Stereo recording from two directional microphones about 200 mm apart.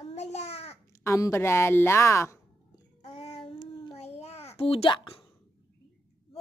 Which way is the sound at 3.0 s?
30° left (ahead or behind).